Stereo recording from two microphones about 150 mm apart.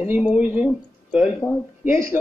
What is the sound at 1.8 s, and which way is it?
Speech, 15° right (ahead or behind).